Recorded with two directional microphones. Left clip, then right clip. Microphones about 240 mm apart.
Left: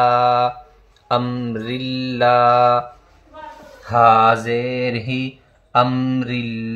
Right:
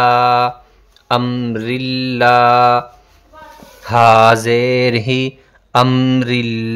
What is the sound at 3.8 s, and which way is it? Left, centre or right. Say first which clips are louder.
Mantra: right 4 dB; right.